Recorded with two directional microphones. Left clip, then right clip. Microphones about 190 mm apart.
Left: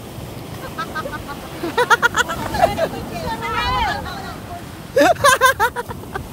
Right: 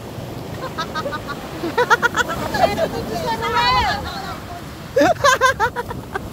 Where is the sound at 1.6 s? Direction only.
15° left (ahead or behind).